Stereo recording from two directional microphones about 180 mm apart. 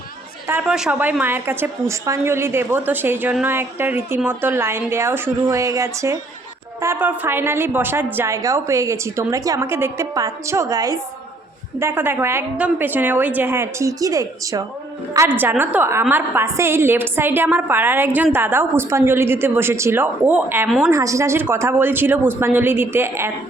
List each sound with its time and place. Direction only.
0.4 s a woman's voice: 5° right (ahead or behind)
20.9 s a woman's voice: 15° right (ahead or behind)